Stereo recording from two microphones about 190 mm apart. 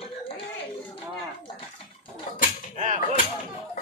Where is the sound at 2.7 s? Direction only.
40° right (ahead or behind).